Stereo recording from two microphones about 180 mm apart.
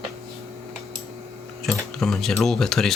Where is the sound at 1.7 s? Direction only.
Centre (ahead or behind).